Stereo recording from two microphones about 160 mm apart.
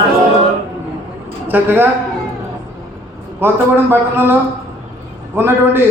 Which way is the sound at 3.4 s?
15° right (ahead or behind).